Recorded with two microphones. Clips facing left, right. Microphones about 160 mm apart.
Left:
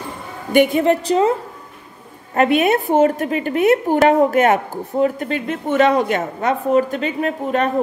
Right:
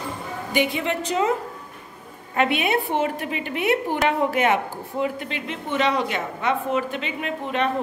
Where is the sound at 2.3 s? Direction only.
45° left (ahead or behind).